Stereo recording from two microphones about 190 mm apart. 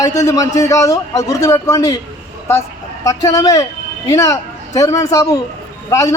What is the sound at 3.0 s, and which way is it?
A man's voice, 20° left (ahead or behind).